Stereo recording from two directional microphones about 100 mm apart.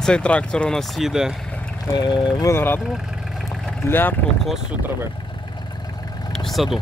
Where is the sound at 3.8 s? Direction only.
20° left (ahead or behind).